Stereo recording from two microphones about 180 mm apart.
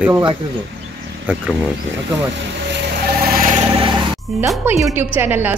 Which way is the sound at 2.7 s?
55° right (ahead or behind).